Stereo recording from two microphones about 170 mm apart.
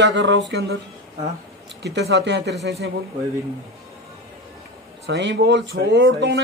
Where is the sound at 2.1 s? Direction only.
85° right.